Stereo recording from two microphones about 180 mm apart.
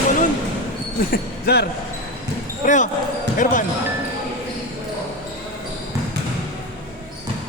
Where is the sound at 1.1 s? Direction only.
60° left (ahead or behind).